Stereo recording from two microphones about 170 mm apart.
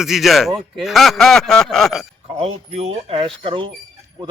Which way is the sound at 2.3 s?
35° right (ahead or behind).